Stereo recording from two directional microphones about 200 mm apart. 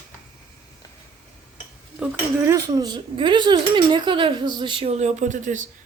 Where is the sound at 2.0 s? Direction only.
15° right (ahead or behind).